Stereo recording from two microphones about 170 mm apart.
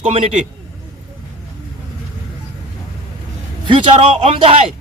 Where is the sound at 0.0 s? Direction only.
35° right (ahead or behind).